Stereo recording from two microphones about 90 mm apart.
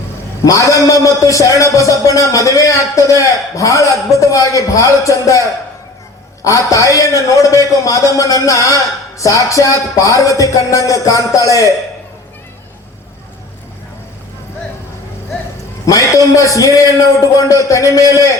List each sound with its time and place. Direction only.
0.4 s a man's voice: 40° left (ahead or behind)
15.9 s a man's voice: 40° left (ahead or behind)